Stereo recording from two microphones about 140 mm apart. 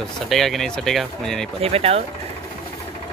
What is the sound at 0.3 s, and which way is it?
Speech, centre (ahead or behind).